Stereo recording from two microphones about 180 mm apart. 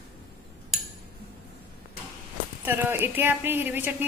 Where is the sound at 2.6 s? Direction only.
10° right (ahead or behind).